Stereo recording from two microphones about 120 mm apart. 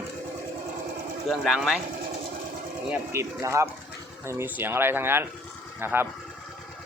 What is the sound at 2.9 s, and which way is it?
A man's voice, 20° right (ahead or behind).